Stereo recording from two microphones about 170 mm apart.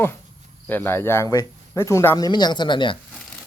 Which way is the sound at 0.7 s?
10° left (ahead or behind).